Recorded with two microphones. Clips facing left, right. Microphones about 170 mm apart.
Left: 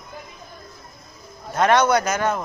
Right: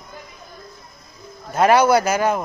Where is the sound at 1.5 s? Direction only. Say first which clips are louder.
Right 3 dB; 10° right (ahead or behind).